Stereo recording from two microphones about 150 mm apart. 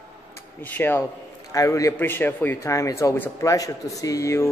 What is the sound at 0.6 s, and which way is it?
Speech, 15° left (ahead or behind).